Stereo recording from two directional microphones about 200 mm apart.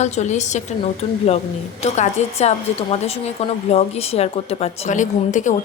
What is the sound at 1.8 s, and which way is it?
A woman's voice, 35° left (ahead or behind).